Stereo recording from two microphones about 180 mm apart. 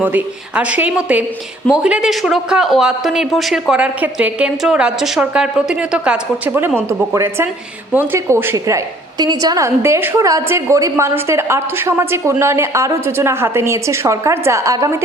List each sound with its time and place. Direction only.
0.0 s a woman's voice: 10° right (ahead or behind)